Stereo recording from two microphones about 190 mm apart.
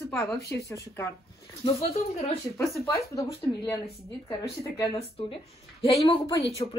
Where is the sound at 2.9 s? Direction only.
15° left (ahead or behind).